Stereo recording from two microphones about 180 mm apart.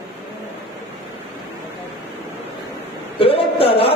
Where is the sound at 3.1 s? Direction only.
30° left (ahead or behind).